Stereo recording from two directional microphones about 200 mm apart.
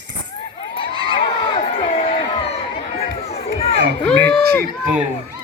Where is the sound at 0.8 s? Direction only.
25° left (ahead or behind).